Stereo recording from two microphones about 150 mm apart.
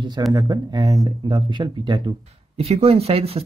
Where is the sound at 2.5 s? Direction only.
45° right (ahead or behind).